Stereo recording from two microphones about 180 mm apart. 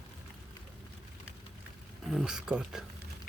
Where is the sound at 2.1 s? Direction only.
Centre (ahead or behind).